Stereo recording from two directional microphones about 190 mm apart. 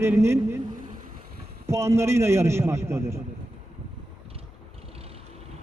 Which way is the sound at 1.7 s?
15° right (ahead or behind).